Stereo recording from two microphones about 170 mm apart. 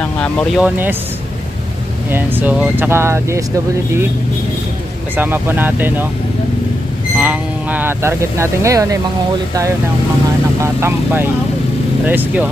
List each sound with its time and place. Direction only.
0.0 s speech: 10° left (ahead or behind)
0.6 s speech: 10° right (ahead or behind)
2.0 s speech: 10° right (ahead or behind)
5.1 s speech: 10° right (ahead or behind)
7.2 s speech: 10° right (ahead or behind)
10.6 s speech: 15° right (ahead or behind)